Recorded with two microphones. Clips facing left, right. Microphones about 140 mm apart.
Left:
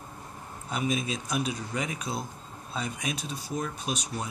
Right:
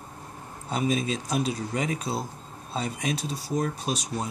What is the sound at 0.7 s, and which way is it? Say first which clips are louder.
Speech: right 3 dB; 35° right (ahead or behind).